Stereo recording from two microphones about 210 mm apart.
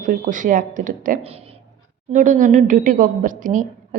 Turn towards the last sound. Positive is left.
turn(degrees=-40)  # may be behind; listen again after turning